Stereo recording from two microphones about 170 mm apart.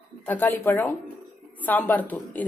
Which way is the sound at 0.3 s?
10° left (ahead or behind).